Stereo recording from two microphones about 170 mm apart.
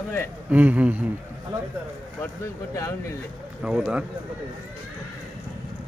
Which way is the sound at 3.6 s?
5° right (ahead or behind).